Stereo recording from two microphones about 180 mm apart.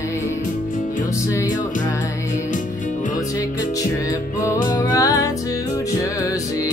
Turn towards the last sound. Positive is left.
turn(degrees=20)  # may be behind; listen again after turning